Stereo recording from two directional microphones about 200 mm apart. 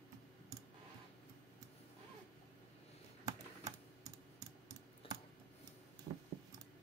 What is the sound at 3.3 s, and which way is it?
Typing, 15° right (ahead or behind).